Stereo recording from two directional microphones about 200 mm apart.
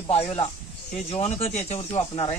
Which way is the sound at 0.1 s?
30° left (ahead or behind).